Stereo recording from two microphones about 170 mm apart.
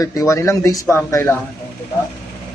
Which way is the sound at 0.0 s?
20° left (ahead or behind).